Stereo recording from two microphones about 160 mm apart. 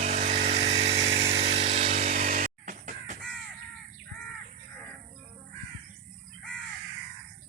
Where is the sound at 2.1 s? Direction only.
55° right (ahead or behind).